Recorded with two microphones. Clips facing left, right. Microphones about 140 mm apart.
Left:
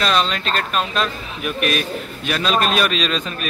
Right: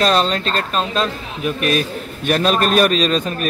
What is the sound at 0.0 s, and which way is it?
A man's voice, 35° right (ahead or behind).